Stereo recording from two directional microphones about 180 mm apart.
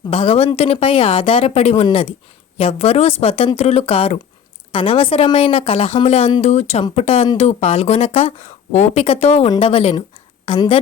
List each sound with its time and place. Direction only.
0.1 s a woman's voice: 30° left (ahead or behind)